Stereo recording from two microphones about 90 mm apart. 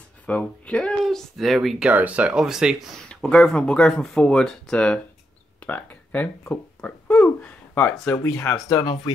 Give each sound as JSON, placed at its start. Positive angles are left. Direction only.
{"t": 0.3, "sound": "speech", "side_deg": 10}
{"t": 1.0, "sound": "speech", "side_deg": 0}
{"t": 1.9, "sound": "speech", "side_deg": -15}
{"t": 3.1, "sound": "speech", "side_deg": 10}
{"t": 8.2, "sound": "speech", "side_deg": 35}